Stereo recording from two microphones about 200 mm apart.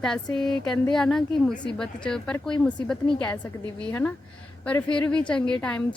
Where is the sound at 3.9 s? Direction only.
10° left (ahead or behind).